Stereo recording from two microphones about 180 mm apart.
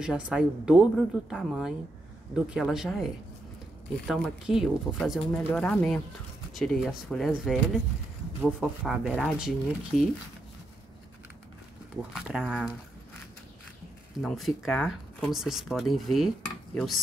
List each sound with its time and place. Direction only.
0.0 s a woman's voice: 5° right (ahead or behind)
4.1 s a woman's voice: centre (ahead or behind)
12.1 s a woman's voice: 5° right (ahead or behind)
14.2 s a woman's voice: centre (ahead or behind)